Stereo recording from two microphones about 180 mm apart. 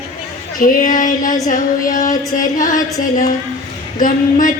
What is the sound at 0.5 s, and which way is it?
Speech, 50° left (ahead or behind).